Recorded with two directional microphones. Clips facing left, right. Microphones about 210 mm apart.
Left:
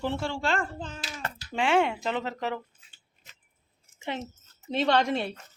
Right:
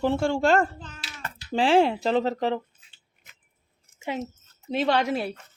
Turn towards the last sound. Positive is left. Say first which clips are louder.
# right 1 dB
turn(degrees=-5)  # may be behind; listen again after turning